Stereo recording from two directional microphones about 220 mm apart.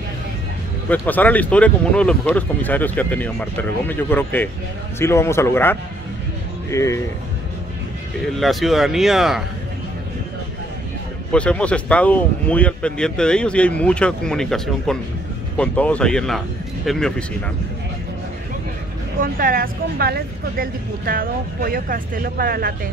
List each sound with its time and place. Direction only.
0.8 s speech: 10° left (ahead or behind)
8.4 s speech: centre (ahead or behind)
11.3 s speech: 5° left (ahead or behind)
19.1 s speech: 40° right (ahead or behind)